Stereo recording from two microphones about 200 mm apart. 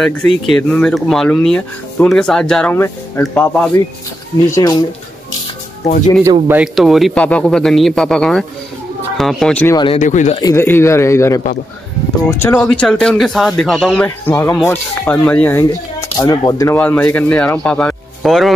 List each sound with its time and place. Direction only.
0.0 s speech: 5° left (ahead or behind)
6.4 s speech: 5° right (ahead or behind)
9.8 s speech: 25° left (ahead or behind)
10.4 s speech: 10° left (ahead or behind)